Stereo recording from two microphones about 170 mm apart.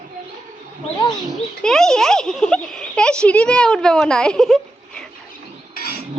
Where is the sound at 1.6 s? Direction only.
5° left (ahead or behind).